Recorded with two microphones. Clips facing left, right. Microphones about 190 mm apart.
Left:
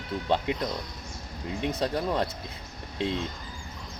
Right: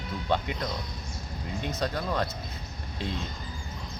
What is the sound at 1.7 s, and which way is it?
Speech, 30° left (ahead or behind).